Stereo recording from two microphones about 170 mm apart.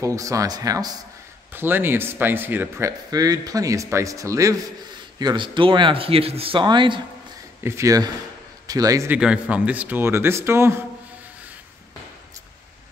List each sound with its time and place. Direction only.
0.0 s a man's voice: 20° right (ahead or behind)
9.2 s a man's voice: 5° right (ahead or behind)